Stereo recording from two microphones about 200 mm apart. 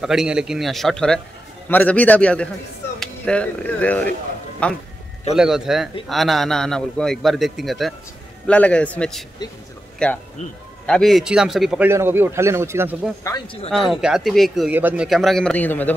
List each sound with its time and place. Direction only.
0.0 s a man's voice: centre (ahead or behind)
13.2 s a man's voice: 15° left (ahead or behind)
13.7 s speech: centre (ahead or behind)